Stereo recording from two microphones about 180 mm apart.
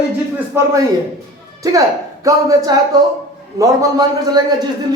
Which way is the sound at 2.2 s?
20° right (ahead or behind).